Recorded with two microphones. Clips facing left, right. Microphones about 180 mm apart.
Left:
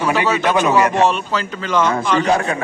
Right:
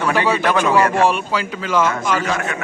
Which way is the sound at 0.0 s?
15° left (ahead or behind).